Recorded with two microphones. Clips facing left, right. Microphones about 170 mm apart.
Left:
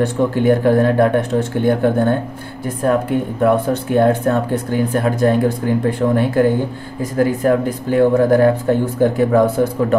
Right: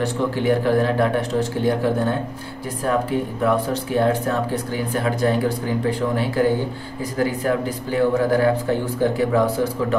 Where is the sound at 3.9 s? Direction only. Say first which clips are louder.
Left 5 dB; 50° left (ahead or behind).